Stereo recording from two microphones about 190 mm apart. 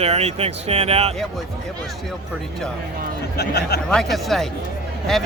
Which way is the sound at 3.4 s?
55° left (ahead or behind).